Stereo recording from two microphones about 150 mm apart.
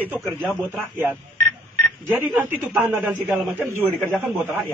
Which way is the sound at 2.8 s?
10° right (ahead or behind).